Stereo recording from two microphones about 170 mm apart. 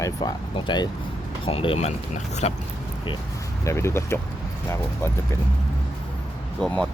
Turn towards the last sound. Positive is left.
turn(degrees=5)  # may be behind; listen again after turning